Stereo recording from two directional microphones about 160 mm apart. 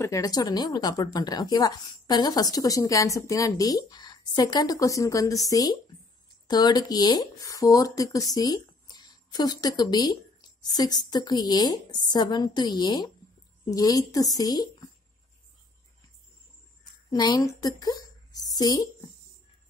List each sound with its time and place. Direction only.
0.0 s a woman's voice: 20° left (ahead or behind)
17.1 s a woman's voice: 25° left (ahead or behind)